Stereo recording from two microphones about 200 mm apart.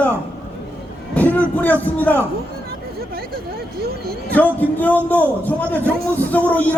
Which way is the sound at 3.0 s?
50° right (ahead or behind).